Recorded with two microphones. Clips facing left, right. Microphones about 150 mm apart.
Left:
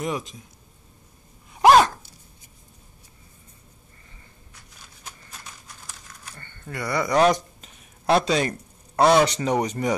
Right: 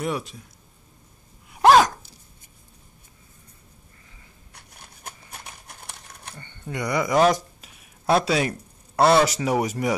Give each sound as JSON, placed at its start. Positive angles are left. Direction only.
{"t": 0.0, "sound": "speech", "side_deg": -5}
{"t": 1.6, "sound": "dog", "side_deg": 0}
{"t": 4.6, "sound": "a sound", "side_deg": -60}
{"t": 6.3, "sound": "speech", "side_deg": -15}